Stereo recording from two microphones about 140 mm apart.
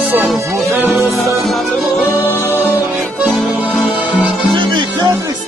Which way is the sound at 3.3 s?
Centre (ahead or behind).